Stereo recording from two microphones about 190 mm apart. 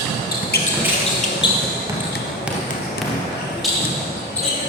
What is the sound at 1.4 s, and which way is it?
Basketball bounce, 25° left (ahead or behind).